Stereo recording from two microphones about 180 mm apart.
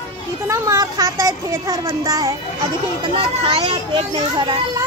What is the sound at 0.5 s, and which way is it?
A child's voice, 20° right (ahead or behind).